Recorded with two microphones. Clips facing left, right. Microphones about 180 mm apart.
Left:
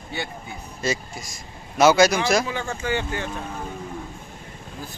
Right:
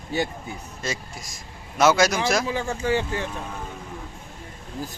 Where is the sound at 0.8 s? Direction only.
Centre (ahead or behind).